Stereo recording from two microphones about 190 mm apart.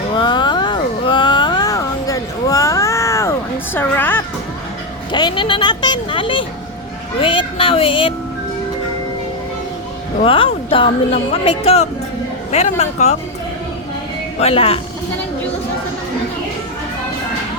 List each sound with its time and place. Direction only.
0.2 s a sound: 25° left (ahead or behind)
3.8 s speech: 10° left (ahead or behind)
5.1 s speech: 25° left (ahead or behind)
10.2 s speech: 30° left (ahead or behind)
14.3 s speech: 30° left (ahead or behind)